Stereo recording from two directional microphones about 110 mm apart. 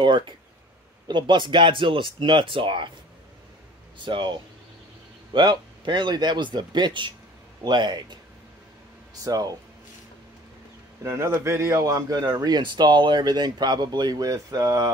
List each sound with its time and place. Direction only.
1.0 s speech: 45° right (ahead or behind)
4.0 s speech: 45° right (ahead or behind)
9.2 s speech: 35° right (ahead or behind)
11.1 s speech: 25° right (ahead or behind)